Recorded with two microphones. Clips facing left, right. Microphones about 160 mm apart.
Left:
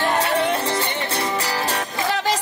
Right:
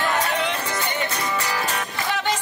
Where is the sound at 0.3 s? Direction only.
30° left (ahead or behind).